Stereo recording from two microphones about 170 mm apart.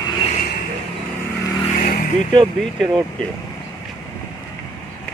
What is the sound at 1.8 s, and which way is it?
Vehicle, 60° left (ahead or behind).